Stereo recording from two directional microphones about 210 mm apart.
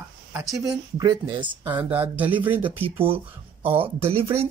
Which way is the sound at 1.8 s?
10° right (ahead or behind).